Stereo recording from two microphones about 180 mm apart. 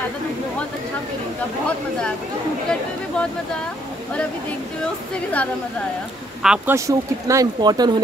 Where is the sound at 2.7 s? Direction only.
5° left (ahead or behind).